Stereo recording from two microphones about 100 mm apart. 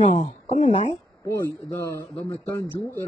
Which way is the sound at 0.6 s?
90° left.